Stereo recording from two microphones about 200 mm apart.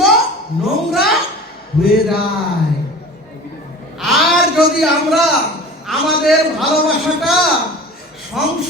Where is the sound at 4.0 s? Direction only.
Centre (ahead or behind).